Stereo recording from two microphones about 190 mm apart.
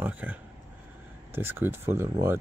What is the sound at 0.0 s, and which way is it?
Speech, 10° right (ahead or behind).